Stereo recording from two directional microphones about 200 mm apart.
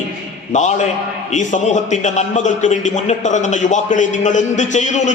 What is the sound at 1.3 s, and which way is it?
A man's voice, 40° left (ahead or behind).